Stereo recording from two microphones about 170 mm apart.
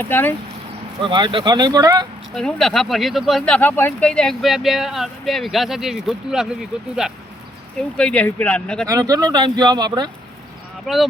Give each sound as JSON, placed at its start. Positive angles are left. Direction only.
{"t": 0.0, "sound": "speech", "side_deg": 10}
{"t": 1.0, "sound": "speech", "side_deg": -30}
{"t": 2.3, "sound": "speech", "side_deg": 5}
{"t": 8.9, "sound": "speech", "side_deg": -20}
{"t": 10.8, "sound": "speech", "side_deg": 0}